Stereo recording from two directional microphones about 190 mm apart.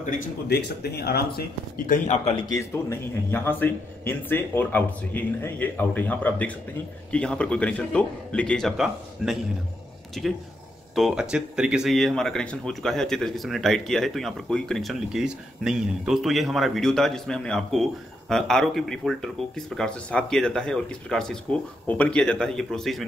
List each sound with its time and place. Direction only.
0.5 s speech: 60° left (ahead or behind)
2.0 s a man's voice: 30° left (ahead or behind)
2.4 s speech: 15° left (ahead or behind)